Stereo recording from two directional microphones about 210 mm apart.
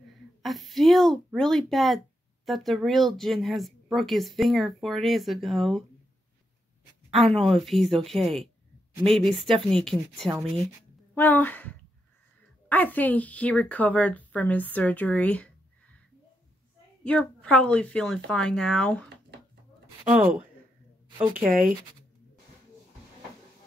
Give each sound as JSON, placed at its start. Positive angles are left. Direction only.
{"t": 0.4, "sound": "speech", "side_deg": 0}
{"t": 7.3, "sound": "a woman's voice", "side_deg": 0}
{"t": 17.0, "sound": "speech", "side_deg": 5}
{"t": 21.2, "sound": "speech", "side_deg": -10}
{"t": 21.5, "sound": "speech", "side_deg": -40}